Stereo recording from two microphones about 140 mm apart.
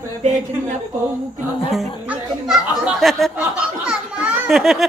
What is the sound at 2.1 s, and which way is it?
Speech, 5° right (ahead or behind).